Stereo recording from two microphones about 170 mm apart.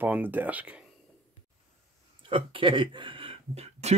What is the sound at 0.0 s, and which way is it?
Speech, 10° right (ahead or behind).